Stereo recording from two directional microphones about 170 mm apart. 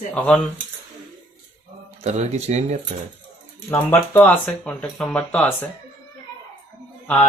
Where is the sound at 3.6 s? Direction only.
20° left (ahead or behind).